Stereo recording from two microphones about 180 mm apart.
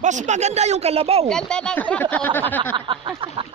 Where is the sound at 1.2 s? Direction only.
5° left (ahead or behind).